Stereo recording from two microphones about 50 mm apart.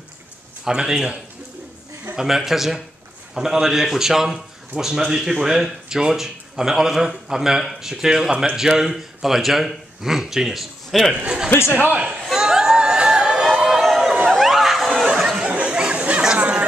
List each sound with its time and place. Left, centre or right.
0.7 s a man's voice: centre
2.1 s a man's voice: centre
11.2 s a man's voice: centre
12.4 s crowd: centre
13.7 s a sound: centre
15.4 s chatter: right